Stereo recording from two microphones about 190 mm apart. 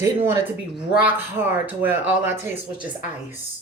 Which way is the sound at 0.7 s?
5° right (ahead or behind).